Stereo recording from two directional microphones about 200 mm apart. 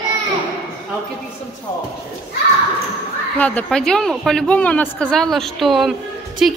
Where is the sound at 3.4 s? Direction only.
5° left (ahead or behind).